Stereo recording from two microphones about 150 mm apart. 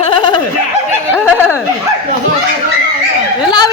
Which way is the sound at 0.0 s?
35° left (ahead or behind).